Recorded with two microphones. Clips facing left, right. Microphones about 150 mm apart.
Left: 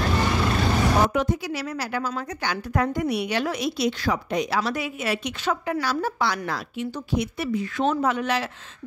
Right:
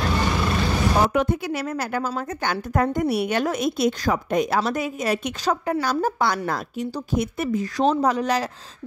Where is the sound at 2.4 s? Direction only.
45° right (ahead or behind).